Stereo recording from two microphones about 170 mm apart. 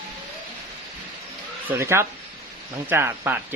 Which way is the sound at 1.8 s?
15° right (ahead or behind).